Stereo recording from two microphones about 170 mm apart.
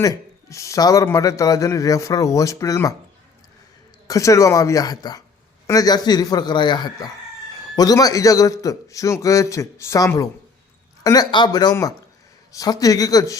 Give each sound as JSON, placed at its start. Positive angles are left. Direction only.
{"t": 0.0, "sound": "a man's voice", "side_deg": 15}
{"t": 4.0, "sound": "a man's voice", "side_deg": 20}